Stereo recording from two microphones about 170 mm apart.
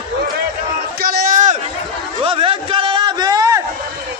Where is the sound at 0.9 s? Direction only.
55° right (ahead or behind).